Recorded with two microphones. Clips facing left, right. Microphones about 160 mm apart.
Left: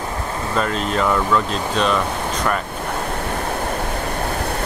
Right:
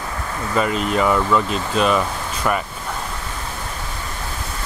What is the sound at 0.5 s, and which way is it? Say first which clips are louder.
Speech: right 2 dB; 5° right (ahead or behind).